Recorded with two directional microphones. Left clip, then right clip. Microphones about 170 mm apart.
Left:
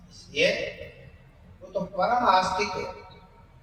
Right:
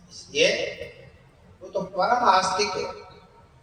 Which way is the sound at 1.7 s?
25° right (ahead or behind).